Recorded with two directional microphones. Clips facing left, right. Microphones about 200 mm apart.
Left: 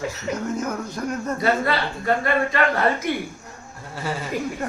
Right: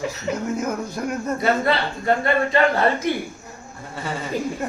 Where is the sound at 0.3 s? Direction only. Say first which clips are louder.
Right 2 dB; 10° right (ahead or behind).